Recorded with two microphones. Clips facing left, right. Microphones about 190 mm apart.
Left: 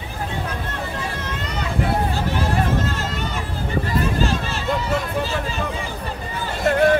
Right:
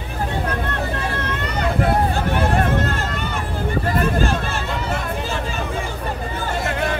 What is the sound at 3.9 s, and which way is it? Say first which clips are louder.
Vehicle: even; 55° right (ahead or behind).